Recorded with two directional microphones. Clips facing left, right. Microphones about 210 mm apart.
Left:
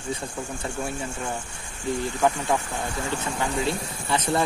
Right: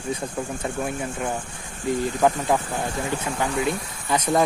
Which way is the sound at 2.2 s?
15° right (ahead or behind).